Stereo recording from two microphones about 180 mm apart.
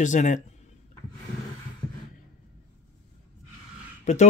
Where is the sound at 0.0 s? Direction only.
45° left (ahead or behind).